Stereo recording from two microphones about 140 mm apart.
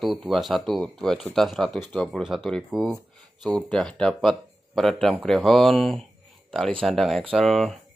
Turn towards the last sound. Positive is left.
turn(degrees=0)  # may be behind; listen again after turning